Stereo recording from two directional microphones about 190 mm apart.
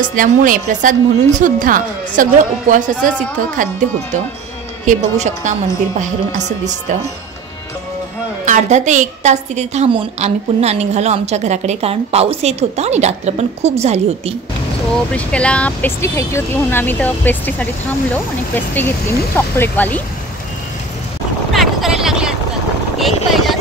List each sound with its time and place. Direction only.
0.0 s a woman's voice: 45° right (ahead or behind)
4.8 s a woman's voice: 40° right (ahead or behind)
8.5 s a woman's voice: 40° right (ahead or behind)
15.1 s speech: 5° left (ahead or behind)
21.5 s vehicle: centre (ahead or behind)
22.9 s a sound: centre (ahead or behind)